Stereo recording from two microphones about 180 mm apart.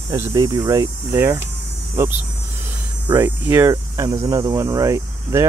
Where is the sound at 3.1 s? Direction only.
10° right (ahead or behind).